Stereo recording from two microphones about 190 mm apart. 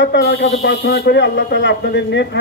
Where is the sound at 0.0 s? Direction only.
65° left (ahead or behind).